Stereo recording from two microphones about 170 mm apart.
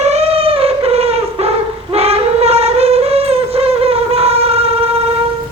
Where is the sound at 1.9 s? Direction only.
35° right (ahead or behind).